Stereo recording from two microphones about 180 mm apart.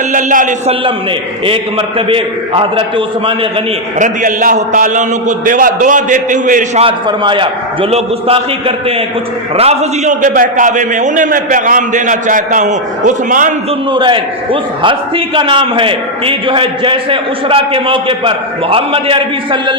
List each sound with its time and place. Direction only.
0.1 s a man's voice: 45° right (ahead or behind)
2.0 s a man's voice: 30° right (ahead or behind)
3.9 s a man's voice: 45° right (ahead or behind)
6.8 s a man's voice: 25° right (ahead or behind); by 13.5 s 45° right (ahead or behind)
13.9 s a man's voice: 25° right (ahead or behind)